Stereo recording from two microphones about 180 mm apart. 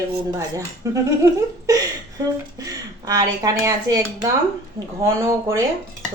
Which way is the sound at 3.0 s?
20° right (ahead or behind).